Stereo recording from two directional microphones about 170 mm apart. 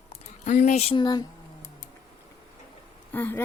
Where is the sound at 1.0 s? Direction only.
25° left (ahead or behind).